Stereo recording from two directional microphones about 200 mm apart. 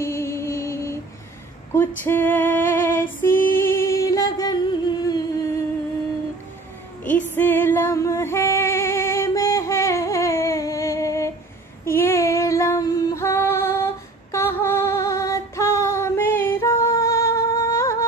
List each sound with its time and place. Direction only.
0.0 s music: 15° left (ahead or behind)
1.7 s female singing: 10° left (ahead or behind)
3.5 s music: 15° left (ahead or behind)
7.1 s female singing: 10° left (ahead or behind)